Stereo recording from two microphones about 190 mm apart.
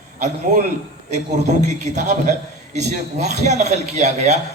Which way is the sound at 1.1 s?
40° right (ahead or behind).